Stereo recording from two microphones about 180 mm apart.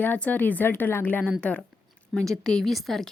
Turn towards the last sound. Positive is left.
turn(degrees=0)  # may be behind; listen again after turning